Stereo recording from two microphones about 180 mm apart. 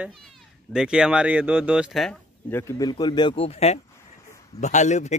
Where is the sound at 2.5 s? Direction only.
15° left (ahead or behind).